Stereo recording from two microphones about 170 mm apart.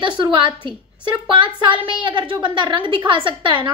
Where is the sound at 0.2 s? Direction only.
30° right (ahead or behind).